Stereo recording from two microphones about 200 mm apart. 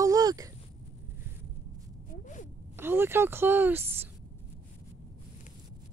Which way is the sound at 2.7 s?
10° right (ahead or behind).